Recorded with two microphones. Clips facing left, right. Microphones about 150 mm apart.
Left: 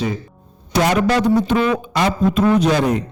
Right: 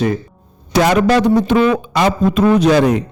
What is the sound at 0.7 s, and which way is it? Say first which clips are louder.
A man's voice: right 4 dB; 90° right.